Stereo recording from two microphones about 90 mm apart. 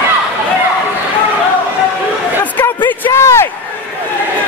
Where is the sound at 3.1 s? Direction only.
30° left (ahead or behind).